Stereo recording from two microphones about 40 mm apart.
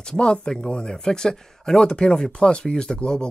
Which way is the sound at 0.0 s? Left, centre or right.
Centre.